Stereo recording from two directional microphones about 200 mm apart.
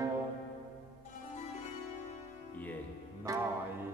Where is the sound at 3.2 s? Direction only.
15° right (ahead or behind).